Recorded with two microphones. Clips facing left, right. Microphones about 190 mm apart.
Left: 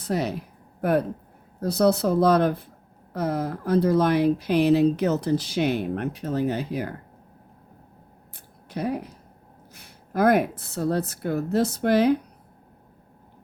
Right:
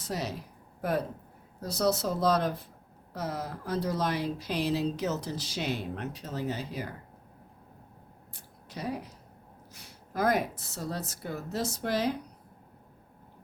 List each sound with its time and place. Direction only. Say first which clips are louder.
0.0 s speech: left 8 dB; 60° left (ahead or behind)
8.7 s speech: left 8 dB; 55° left (ahead or behind)